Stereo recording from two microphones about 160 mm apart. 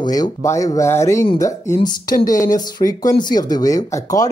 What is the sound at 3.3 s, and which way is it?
Speech, 25° left (ahead or behind).